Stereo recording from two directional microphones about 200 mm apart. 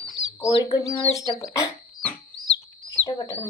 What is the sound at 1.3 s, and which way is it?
Frog, 20° left (ahead or behind).